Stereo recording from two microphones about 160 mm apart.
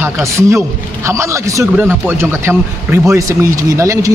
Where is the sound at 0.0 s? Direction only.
15° right (ahead or behind).